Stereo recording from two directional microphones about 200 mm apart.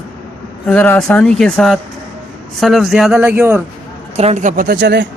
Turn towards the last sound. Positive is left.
turn(degrees=-60)  # may be behind; listen again after turning